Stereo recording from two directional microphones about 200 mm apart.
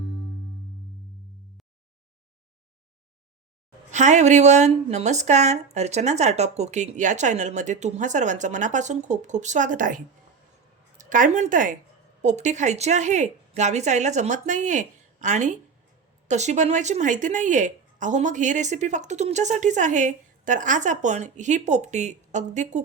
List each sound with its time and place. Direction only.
3.9 s a woman's voice: 35° right (ahead or behind)